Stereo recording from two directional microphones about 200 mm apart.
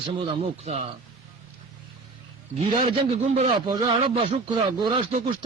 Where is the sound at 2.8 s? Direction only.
30° right (ahead or behind).